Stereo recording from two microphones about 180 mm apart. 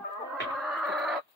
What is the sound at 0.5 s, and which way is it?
Chicken, centre (ahead or behind).